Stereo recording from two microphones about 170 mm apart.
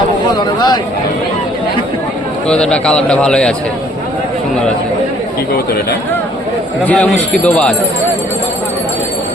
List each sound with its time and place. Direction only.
0.3 s speech: 25° left (ahead or behind)
2.5 s a man's voice: 5° left (ahead or behind)
6.8 s speech: 5° left (ahead or behind)